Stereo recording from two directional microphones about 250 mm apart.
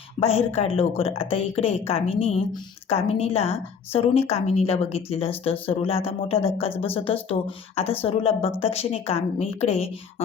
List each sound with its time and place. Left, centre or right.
0.2 s a woman's voice: left